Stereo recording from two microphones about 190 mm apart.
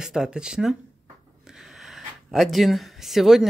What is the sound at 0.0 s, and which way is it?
Speech, 5° right (ahead or behind).